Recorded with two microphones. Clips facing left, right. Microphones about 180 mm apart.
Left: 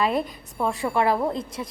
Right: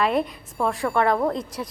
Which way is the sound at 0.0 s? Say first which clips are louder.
Right 2 dB; centre (ahead or behind).